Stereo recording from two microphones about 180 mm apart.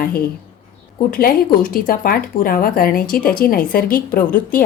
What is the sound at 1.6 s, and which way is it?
Speech, 50° left (ahead or behind).